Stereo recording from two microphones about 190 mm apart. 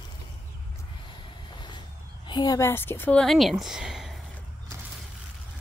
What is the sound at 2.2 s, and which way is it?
Speech, 20° left (ahead or behind).